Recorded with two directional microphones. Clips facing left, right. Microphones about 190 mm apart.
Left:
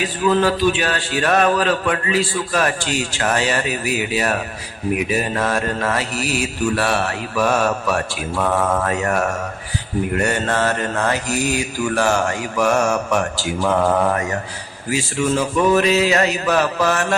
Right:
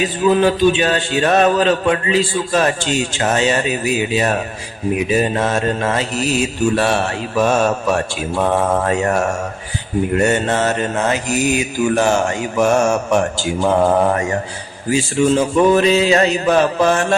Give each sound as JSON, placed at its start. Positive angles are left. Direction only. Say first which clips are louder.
{"t": 0.0, "sound": "a man's voice", "louder": "right 3 dB", "side_deg": -20}